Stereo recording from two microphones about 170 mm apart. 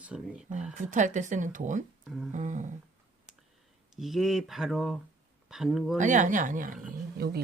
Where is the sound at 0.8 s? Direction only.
50° right (ahead or behind).